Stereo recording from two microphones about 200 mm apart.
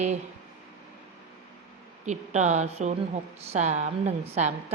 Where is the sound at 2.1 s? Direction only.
35° right (ahead or behind).